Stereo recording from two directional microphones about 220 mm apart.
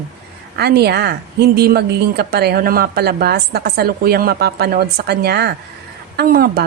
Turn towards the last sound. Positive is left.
turn(degrees=-45)  # may be behind; listen again after turning